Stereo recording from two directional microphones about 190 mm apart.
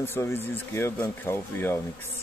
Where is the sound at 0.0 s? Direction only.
10° left (ahead or behind).